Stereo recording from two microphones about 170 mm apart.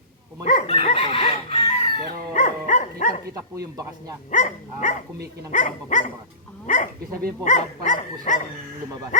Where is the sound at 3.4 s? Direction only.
20° right (ahead or behind).